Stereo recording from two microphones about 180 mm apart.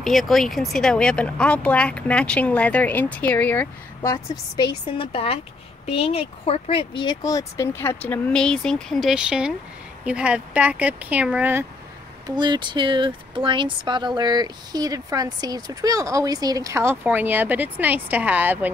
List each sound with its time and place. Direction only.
0.0 s speech: centre (ahead or behind)
12.3 s speech: 25° right (ahead or behind); by 18.7 s 10° right (ahead or behind)